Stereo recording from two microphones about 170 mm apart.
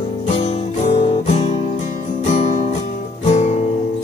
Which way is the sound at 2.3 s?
40° left (ahead or behind).